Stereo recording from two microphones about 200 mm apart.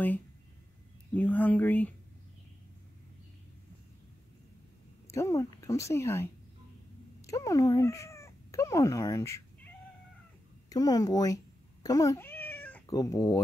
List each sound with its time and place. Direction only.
1.1 s speech: 10° left (ahead or behind)
5.1 s speech: 15° left (ahead or behind)
10.7 s cat: 20° left (ahead or behind)
12.8 s speech: 20° left (ahead or behind)